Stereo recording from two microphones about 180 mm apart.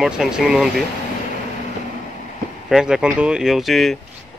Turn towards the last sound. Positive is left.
turn(degrees=0)  # may be behind; listen again after turning